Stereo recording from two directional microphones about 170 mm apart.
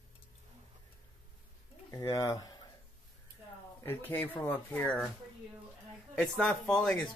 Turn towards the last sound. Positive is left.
turn(degrees=0)  # may be behind; listen again after turning